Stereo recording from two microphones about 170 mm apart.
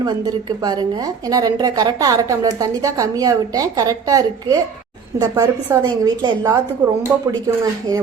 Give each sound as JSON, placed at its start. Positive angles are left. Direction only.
{"t": 0.6, "sound": "a woman's voice", "side_deg": -25}